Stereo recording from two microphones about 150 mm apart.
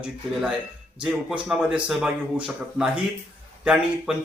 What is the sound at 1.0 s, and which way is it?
Speech, 5° right (ahead or behind).